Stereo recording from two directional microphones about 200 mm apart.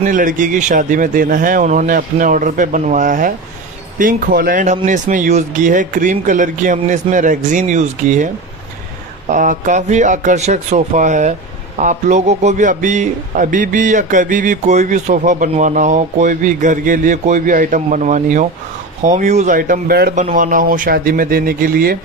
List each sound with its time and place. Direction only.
0.0 s a man's voice: 40° right (ahead or behind)
9.3 s a man's voice: 40° right (ahead or behind)
20.2 s speech: 40° right (ahead or behind)